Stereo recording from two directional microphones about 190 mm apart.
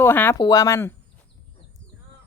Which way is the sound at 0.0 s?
10° left (ahead or behind).